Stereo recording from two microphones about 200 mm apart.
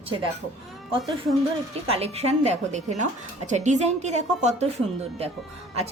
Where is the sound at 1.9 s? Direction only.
30° right (ahead or behind).